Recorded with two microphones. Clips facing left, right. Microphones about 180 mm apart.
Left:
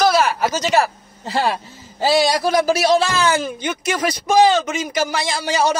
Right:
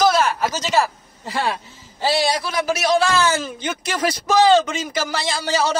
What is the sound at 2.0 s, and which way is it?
A man's voice, 40° left (ahead or behind).